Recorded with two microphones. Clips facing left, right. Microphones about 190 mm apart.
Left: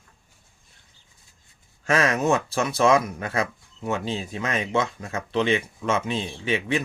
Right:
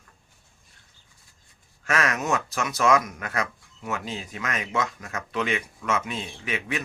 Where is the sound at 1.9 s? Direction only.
30° left (ahead or behind).